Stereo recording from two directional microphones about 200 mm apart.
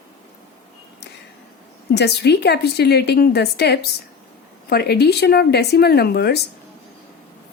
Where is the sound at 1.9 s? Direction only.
55° left (ahead or behind).